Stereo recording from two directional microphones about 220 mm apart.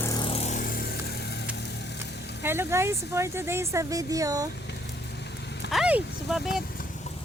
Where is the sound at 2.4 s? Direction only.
10° right (ahead or behind).